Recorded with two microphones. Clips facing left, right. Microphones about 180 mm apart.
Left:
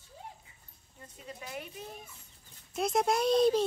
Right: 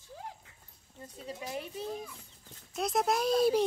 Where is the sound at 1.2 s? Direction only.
30° right (ahead or behind).